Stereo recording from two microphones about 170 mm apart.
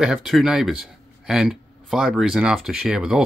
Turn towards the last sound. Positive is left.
turn(degrees=-5)  # may be behind; listen again after turning